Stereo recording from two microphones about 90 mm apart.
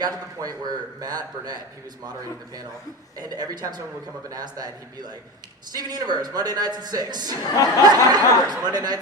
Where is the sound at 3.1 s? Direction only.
45° right (ahead or behind).